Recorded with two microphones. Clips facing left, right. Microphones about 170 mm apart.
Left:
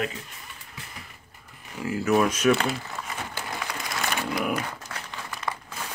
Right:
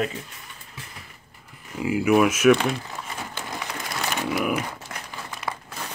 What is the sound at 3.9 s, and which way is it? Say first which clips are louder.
Crumpling: right 2 dB; 5° right (ahead or behind).